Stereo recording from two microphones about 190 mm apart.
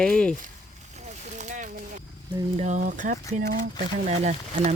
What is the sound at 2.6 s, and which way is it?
Speech, 40° right (ahead or behind).